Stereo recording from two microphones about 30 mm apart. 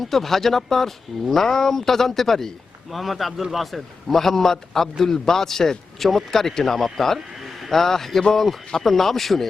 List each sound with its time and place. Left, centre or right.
0.0 s speech: centre
2.9 s speech: centre